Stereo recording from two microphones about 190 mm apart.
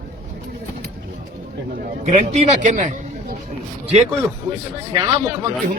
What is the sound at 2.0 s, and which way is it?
Speech, 35° right (ahead or behind).